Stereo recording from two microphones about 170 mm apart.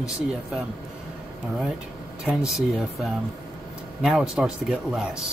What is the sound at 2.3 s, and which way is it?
Speech, centre (ahead or behind).